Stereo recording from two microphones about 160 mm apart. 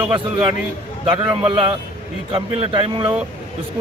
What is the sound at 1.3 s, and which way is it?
Speech, 35° right (ahead or behind).